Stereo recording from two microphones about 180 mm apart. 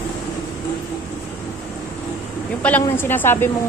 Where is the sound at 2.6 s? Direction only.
10° left (ahead or behind).